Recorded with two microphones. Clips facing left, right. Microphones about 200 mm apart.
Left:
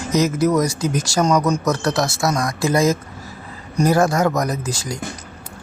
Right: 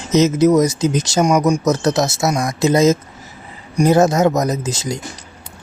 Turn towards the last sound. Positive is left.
turn(degrees=-20)  # may be behind; listen again after turning